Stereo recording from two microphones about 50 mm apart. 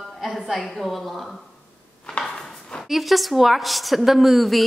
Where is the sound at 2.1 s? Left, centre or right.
Centre.